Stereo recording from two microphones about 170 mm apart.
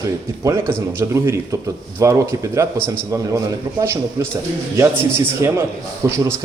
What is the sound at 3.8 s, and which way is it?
A man's voice, 15° right (ahead or behind).